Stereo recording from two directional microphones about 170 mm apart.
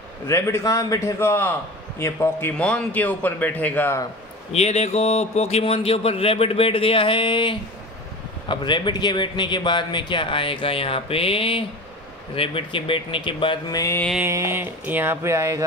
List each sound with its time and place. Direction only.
0.3 s a man's voice: 20° left (ahead or behind)
4.5 s a man's voice: 40° left (ahead or behind); by 14.0 s 20° left (ahead or behind)
14.2 s a sound: 15° right (ahead or behind)